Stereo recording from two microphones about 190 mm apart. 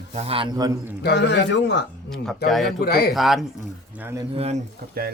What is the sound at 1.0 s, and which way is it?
A man's voice, 65° left (ahead or behind).